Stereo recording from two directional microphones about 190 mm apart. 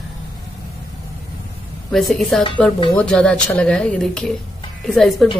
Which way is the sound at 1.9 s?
Centre (ahead or behind).